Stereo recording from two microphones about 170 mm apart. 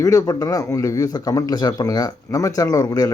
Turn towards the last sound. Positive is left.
turn(degrees=20)  # may be behind; listen again after turning